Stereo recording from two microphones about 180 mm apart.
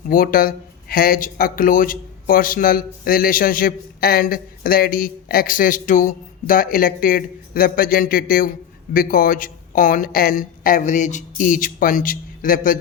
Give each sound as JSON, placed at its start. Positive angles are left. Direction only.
{"t": 0.1, "sound": "speech", "side_deg": 50}